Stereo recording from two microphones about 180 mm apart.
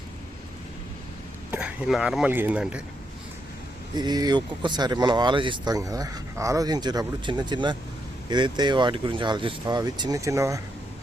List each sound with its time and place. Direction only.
1.5 s a man's voice: 5° right (ahead or behind)
3.9 s speech: 25° right (ahead or behind)